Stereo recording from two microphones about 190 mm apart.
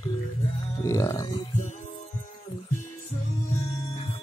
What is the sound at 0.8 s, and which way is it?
Speech, 15° left (ahead or behind).